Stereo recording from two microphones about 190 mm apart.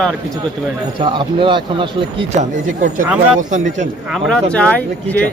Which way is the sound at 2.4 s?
45° right (ahead or behind).